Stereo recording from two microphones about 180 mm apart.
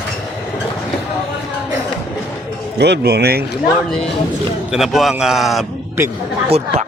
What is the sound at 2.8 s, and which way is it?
Speech, 65° right (ahead or behind).